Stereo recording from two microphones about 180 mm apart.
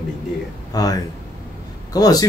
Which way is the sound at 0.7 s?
20° left (ahead or behind).